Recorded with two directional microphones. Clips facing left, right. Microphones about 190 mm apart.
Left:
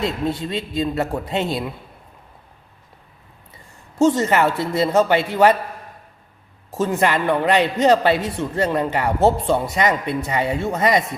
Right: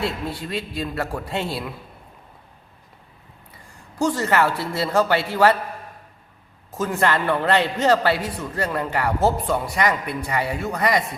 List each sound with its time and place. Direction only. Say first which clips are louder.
0.0 s a man's voice: left 4 dB; 20° left (ahead or behind)
3.9 s a man's voice: left 4 dB; 20° left (ahead or behind)
6.7 s a man's voice: left 2 dB; 25° left (ahead or behind)